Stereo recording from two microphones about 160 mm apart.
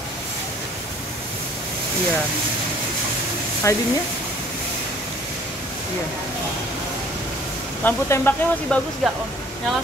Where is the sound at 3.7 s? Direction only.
20° left (ahead or behind).